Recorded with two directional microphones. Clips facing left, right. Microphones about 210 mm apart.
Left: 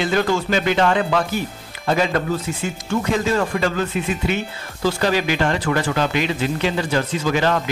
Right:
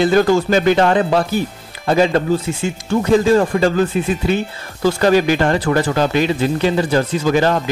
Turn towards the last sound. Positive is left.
turn(degrees=-40)  # may be behind; listen again after turning